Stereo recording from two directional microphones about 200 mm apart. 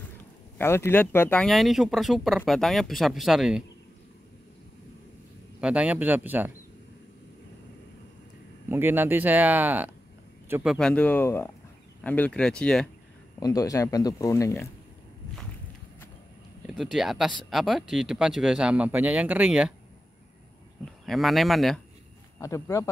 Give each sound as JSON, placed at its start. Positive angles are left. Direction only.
{"t": 0.6, "sound": "speech", "side_deg": 10}
{"t": 5.6, "sound": "speech", "side_deg": -5}
{"t": 8.6, "sound": "speech", "side_deg": -10}
{"t": 13.4, "sound": "speech", "side_deg": 20}
{"t": 16.6, "sound": "speech", "side_deg": 0}
{"t": 20.8, "sound": "speech", "side_deg": 0}
{"t": 22.4, "sound": "speech", "side_deg": 15}